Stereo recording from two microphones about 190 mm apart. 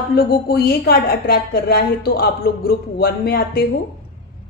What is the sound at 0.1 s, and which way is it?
A woman's voice, 55° left (ahead or behind).